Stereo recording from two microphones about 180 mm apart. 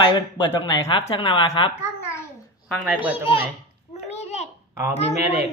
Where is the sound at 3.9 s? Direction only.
35° left (ahead or behind).